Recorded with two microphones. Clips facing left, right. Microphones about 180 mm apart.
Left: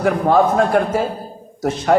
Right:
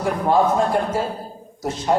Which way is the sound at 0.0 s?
70° left (ahead or behind).